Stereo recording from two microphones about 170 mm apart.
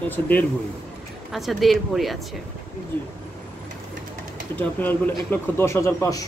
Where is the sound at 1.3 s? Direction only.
Centre (ahead or behind).